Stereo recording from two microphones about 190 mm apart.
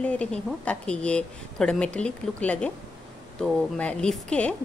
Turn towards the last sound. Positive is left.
turn(degrees=5)  # may be behind; listen again after turning